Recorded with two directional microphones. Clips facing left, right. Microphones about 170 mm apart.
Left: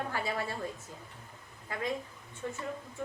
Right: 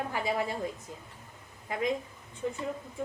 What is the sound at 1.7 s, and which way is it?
Speech, 20° right (ahead or behind).